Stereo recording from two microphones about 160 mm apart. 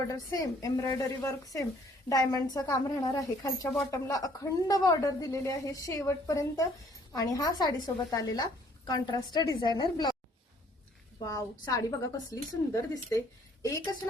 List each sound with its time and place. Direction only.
0.1 s a woman's voice: 20° left (ahead or behind)
11.3 s a woman's voice: 20° left (ahead or behind)